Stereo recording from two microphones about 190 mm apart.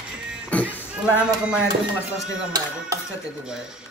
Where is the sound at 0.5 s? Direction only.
5° left (ahead or behind).